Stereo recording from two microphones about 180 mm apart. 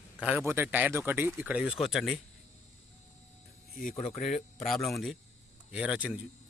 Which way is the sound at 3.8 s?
50° left (ahead or behind).